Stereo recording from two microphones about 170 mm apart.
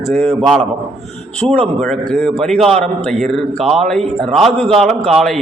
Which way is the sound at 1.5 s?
35° right (ahead or behind).